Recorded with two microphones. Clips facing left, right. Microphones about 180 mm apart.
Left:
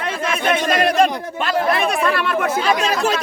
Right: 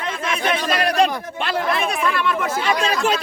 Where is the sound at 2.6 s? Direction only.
40° left (ahead or behind).